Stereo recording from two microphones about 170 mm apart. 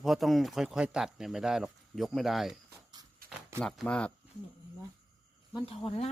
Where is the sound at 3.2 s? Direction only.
55° right (ahead or behind).